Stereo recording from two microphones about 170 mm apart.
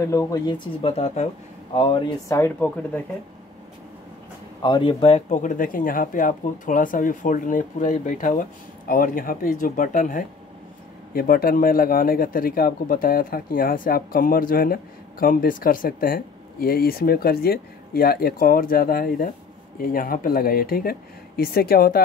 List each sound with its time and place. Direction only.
0.0 s speech: 20° left (ahead or behind)
0.8 s speech: 40° left (ahead or behind)
2.3 s speech: 10° left (ahead or behind)
4.6 s speech: 25° left (ahead or behind); by 22.0 s 60° left (ahead or behind)